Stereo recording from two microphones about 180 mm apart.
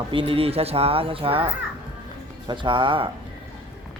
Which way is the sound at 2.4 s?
25° right (ahead or behind).